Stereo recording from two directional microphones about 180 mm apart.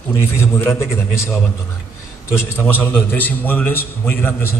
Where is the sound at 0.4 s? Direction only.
15° left (ahead or behind).